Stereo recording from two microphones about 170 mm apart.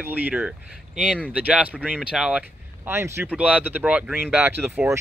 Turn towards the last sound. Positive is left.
turn(degrees=-15)  # may be behind; listen again after turning